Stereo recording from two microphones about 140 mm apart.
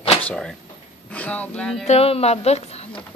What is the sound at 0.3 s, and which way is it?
Speech, 5° left (ahead or behind).